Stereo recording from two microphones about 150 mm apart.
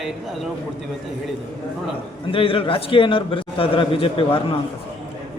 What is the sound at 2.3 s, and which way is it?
A man's voice, 35° left (ahead or behind).